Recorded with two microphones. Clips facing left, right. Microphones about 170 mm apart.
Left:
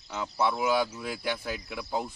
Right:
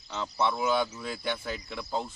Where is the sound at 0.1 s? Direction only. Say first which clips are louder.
Left 1 dB; 10° left (ahead or behind).